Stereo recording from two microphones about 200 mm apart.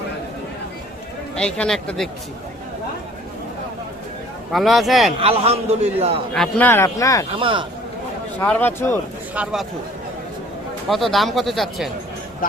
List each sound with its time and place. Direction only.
1.4 s speech: 5° left (ahead or behind)
4.5 s speech: centre (ahead or behind)
5.2 s a man's voice: 30° right (ahead or behind)
6.3 s speech: 5° left (ahead or behind)
7.3 s speech: 25° right (ahead or behind)
8.4 s speech: 10° left (ahead or behind)
9.3 s speech: 5° right (ahead or behind)
10.8 s speech: centre (ahead or behind)
12.4 s speech: 45° left (ahead or behind)